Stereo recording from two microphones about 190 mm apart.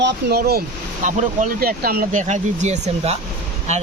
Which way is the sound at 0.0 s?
55° right (ahead or behind).